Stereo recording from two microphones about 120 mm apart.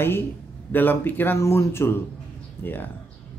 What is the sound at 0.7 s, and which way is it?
Speech, 15° left (ahead or behind).